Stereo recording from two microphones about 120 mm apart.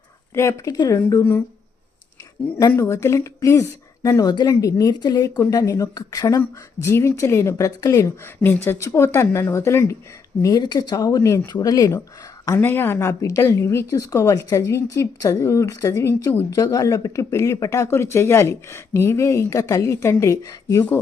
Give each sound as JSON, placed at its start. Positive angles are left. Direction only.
{"t": 0.3, "sound": "speech", "side_deg": 25}
{"t": 2.7, "sound": "speech", "side_deg": 20}
{"t": 7.8, "sound": "speech", "side_deg": 30}
{"t": 8.2, "sound": "speech", "side_deg": 20}
{"t": 10.4, "sound": "speech", "side_deg": 35}
{"t": 12.5, "sound": "speech", "side_deg": 20}